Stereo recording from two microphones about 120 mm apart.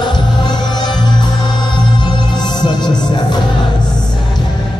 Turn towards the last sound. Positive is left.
turn(degrees=40)  # may be behind; listen again after turning